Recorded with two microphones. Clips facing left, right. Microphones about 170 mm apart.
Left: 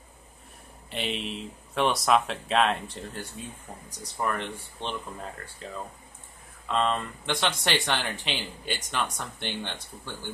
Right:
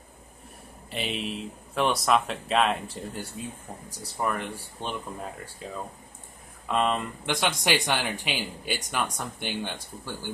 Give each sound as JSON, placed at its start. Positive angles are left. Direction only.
{"t": 0.8, "sound": "speech", "side_deg": 0}